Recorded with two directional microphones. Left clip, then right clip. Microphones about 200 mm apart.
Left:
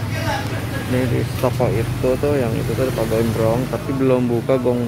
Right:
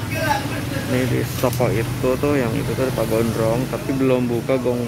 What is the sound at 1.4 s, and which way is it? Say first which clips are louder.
Speech: left 1 dB; centre (ahead or behind).